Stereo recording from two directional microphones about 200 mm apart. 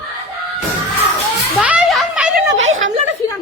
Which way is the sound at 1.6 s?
5° right (ahead or behind).